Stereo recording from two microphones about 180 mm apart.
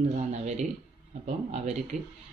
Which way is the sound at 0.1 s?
40° right (ahead or behind).